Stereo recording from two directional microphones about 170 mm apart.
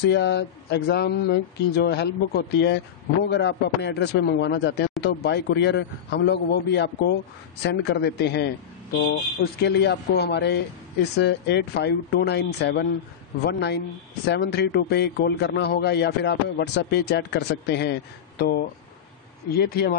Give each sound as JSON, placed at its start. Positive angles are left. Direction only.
{"t": 0.0, "sound": "speech", "side_deg": 90}
{"t": 5.0, "sound": "speech", "side_deg": 80}
{"t": 9.0, "sound": "a man's voice", "side_deg": 70}
{"t": 18.4, "sound": "a man's voice", "side_deg": 65}